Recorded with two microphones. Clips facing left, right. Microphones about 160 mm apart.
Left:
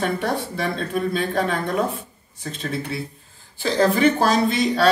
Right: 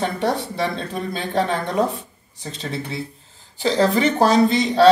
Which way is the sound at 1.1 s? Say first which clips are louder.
Even; 25° right (ahead or behind).